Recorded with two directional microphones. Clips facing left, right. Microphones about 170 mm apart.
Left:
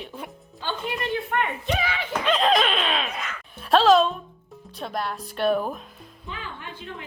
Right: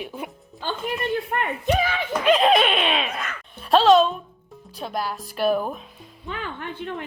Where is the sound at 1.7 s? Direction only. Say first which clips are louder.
Right 8 dB; 45° right (ahead or behind).